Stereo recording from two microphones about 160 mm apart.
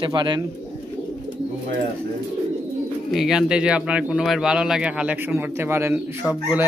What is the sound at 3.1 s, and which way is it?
A man's voice, 5° right (ahead or behind).